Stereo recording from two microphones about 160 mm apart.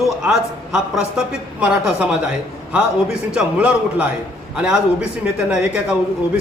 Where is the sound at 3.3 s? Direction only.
5° right (ahead or behind).